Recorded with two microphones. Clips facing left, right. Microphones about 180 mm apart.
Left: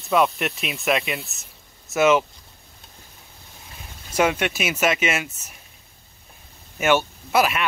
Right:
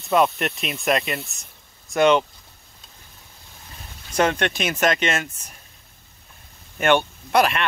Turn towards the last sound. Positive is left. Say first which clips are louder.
# right 1 dB
turn(degrees=5)  # may be behind; listen again after turning